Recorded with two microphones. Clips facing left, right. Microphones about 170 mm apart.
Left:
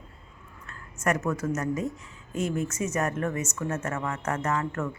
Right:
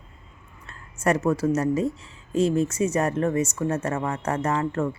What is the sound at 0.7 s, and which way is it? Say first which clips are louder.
Speech: right 4 dB; 30° right (ahead or behind).